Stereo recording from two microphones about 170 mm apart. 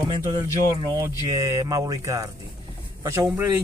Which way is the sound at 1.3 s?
20° right (ahead or behind).